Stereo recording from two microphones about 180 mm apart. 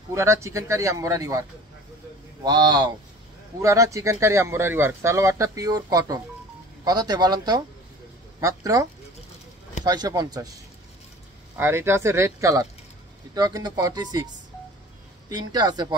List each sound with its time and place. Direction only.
0.1 s speech: 15° right (ahead or behind)
2.4 s speech: 25° right (ahead or behind)
9.8 s speech: 20° right (ahead or behind)
11.5 s speech: 15° right (ahead or behind)